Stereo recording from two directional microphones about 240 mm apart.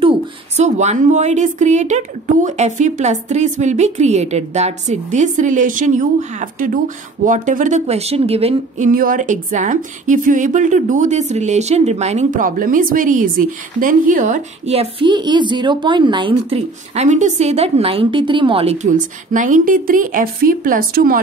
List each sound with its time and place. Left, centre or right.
0.6 s a woman's voice: right